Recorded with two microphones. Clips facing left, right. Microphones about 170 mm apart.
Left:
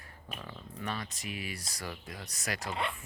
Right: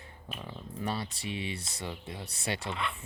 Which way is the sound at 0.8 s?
30° right (ahead or behind).